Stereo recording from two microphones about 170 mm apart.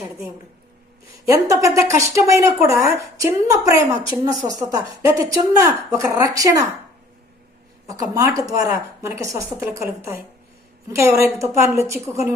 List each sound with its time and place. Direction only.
1.3 s a woman's voice: 20° right (ahead or behind)
7.9 s a woman's voice: 20° right (ahead or behind)